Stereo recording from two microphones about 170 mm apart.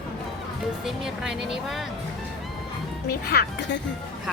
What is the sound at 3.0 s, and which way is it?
Speech, 70° left (ahead or behind).